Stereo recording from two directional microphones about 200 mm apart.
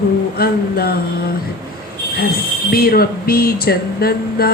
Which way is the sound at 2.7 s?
50° left (ahead or behind).